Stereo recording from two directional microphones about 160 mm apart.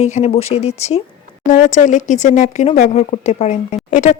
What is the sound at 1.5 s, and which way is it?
Speech, 55° left (ahead or behind).